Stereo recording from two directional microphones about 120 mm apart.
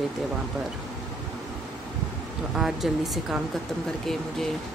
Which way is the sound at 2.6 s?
5° right (ahead or behind).